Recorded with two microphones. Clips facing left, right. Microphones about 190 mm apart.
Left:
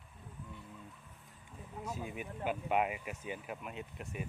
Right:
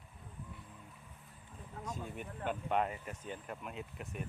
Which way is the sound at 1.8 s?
5° left (ahead or behind).